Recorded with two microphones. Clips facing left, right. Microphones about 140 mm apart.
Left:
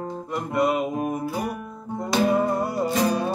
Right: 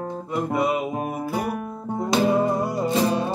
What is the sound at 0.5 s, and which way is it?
Mantra, centre (ahead or behind).